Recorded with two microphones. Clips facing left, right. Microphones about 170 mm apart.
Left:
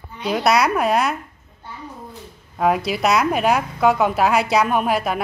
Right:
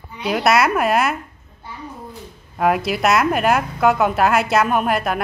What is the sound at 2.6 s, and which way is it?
A woman's voice, centre (ahead or behind).